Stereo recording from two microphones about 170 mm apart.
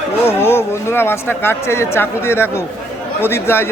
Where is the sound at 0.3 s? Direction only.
15° left (ahead or behind).